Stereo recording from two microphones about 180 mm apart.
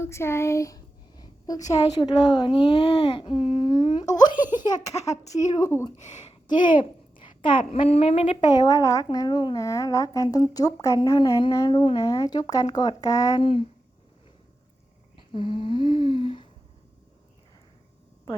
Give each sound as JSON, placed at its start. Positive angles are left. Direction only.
{"t": 0.0, "sound": "a woman's voice", "side_deg": 15}
{"t": 6.0, "sound": "speech", "side_deg": 40}
{"t": 6.5, "sound": "a woman's voice", "side_deg": 25}
{"t": 8.4, "sound": "a woman's voice", "side_deg": 20}
{"t": 15.3, "sound": "a woman's voice", "side_deg": 30}